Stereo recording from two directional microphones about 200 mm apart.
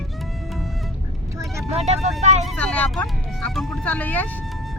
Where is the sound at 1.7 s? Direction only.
30° right (ahead or behind).